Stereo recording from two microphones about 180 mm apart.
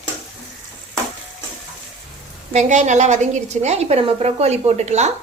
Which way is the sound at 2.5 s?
40° right (ahead or behind).